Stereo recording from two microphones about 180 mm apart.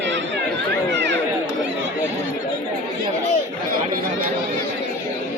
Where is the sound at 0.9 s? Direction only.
75° right (ahead or behind).